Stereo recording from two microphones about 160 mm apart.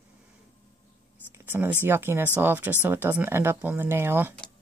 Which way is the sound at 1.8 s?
15° right (ahead or behind).